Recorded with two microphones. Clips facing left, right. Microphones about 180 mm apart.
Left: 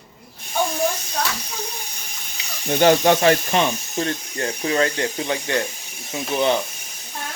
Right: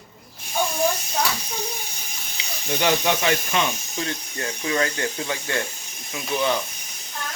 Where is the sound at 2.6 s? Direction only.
45° left (ahead or behind); by 6.6 s 25° left (ahead or behind).